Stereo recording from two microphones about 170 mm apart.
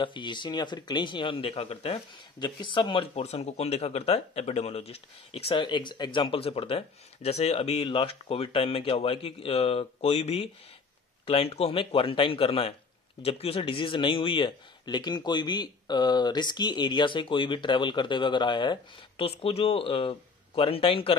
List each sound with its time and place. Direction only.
0.0 s speech: 25° left (ahead or behind)